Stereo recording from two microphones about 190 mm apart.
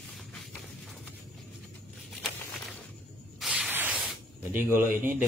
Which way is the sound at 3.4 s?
5° right (ahead or behind).